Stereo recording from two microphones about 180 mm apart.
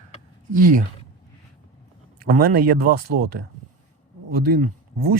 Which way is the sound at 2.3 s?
55° right (ahead or behind).